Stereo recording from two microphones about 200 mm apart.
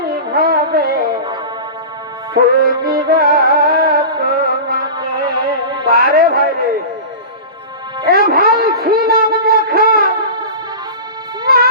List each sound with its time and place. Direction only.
0.0 s music: 50° right (ahead or behind)
1.0 s music: 20° right (ahead or behind)
2.6 s music: 50° right (ahead or behind)
4.9 s music: 20° right (ahead or behind)
5.8 s a sound: 50° right (ahead or behind)
8.0 s a sound: 50° right (ahead or behind)
11.4 s music: 50° right (ahead or behind)